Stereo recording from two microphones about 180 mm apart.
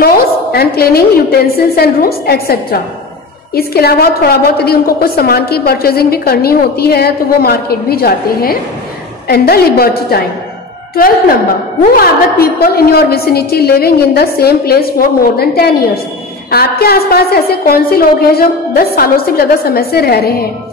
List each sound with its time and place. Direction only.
0.0 s a woman's voice: 55° left (ahead or behind)
11.8 s a woman's voice: 55° left (ahead or behind)